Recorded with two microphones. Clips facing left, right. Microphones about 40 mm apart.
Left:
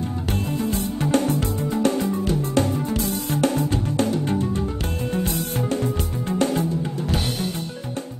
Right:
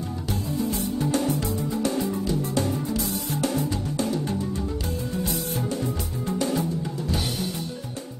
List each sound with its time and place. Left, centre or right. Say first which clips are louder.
0.3 s music: left 2 dB; left